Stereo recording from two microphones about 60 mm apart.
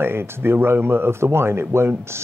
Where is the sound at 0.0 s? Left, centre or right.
Right.